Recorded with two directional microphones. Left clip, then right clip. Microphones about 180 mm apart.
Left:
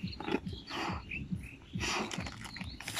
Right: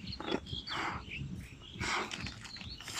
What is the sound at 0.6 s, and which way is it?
Bird, 10° left (ahead or behind).